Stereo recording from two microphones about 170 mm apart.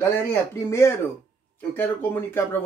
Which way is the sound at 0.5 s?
15° left (ahead or behind).